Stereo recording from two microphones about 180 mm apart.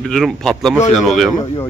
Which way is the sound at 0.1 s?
Centre (ahead or behind).